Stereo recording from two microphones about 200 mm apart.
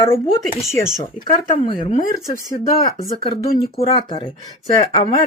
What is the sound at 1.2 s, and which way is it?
Speech, 25° left (ahead or behind).